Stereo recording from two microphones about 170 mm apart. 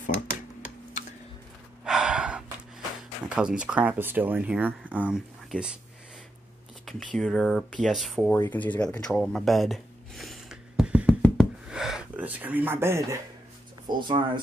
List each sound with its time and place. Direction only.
1.9 s gasp: 5° right (ahead or behind)
3.0 s speech: 5° right (ahead or behind)
6.9 s speech: centre (ahead or behind)
8.5 s a sound: 10° left (ahead or behind); by 13.2 s 15° right (ahead or behind)
13.8 s speech: 25° right (ahead or behind)